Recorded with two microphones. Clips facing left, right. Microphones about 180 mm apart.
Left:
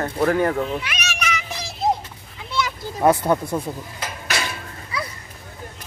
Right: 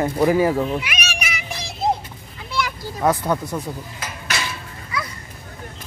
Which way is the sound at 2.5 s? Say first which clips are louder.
Even; 20° left (ahead or behind).